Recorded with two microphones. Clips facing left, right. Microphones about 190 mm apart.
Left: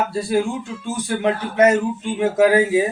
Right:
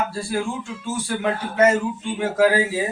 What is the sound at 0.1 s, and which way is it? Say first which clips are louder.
A man's voice: left 5 dB; 20° left (ahead or behind).